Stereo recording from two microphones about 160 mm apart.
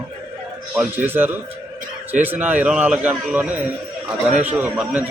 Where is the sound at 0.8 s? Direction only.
15° right (ahead or behind).